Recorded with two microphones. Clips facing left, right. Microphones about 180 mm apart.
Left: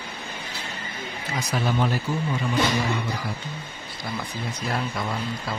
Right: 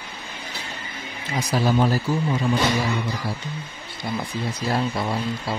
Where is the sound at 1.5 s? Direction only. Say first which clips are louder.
Right 5 dB; 35° right (ahead or behind).